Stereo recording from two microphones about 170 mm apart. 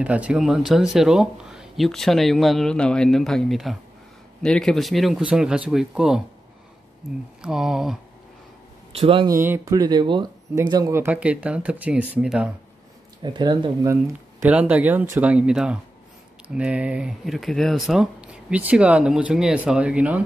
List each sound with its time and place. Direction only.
0.0 s speech: 10° right (ahead or behind)
7.4 s speech: 5° right (ahead or behind)
9.0 s speech: 30° right (ahead or behind)
9.3 s speech: 15° right (ahead or behind)
13.2 s speech: 25° right (ahead or behind); by 20.2 s 10° right (ahead or behind)